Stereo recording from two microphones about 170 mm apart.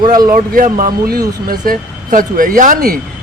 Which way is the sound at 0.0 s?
25° right (ahead or behind).